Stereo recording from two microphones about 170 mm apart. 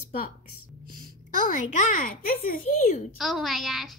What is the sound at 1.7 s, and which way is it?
A child's voice, 50° left (ahead or behind).